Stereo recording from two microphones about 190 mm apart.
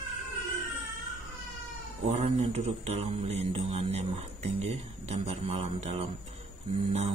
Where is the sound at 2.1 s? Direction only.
35° right (ahead or behind).